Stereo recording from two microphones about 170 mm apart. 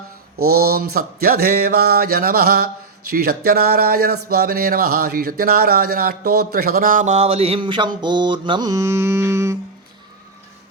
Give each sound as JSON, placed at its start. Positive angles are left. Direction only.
{"t": 0.3, "sound": "speech", "side_deg": -65}